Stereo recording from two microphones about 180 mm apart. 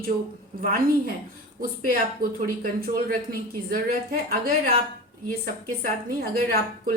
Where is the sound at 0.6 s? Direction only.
55° right (ahead or behind).